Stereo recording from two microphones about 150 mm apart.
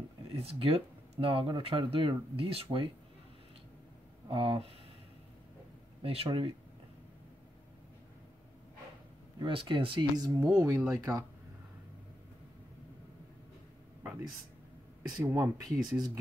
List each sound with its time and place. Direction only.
0.3 s speech: 40° right (ahead or behind)
4.3 s speech: 40° right (ahead or behind)
6.0 s speech: 35° right (ahead or behind)
9.4 s speech: 35° right (ahead or behind)
10.4 s speech: 15° right (ahead or behind)
15.2 s speech: 15° right (ahead or behind)